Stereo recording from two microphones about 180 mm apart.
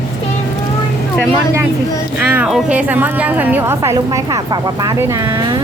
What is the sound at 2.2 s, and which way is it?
A woman's voice, 5° right (ahead or behind).